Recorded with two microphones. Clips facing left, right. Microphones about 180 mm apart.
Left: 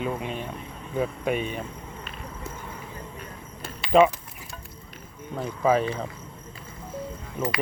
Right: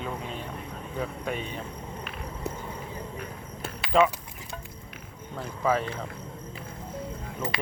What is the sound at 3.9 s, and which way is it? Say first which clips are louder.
Speech: left 4 dB; 20° left (ahead or behind).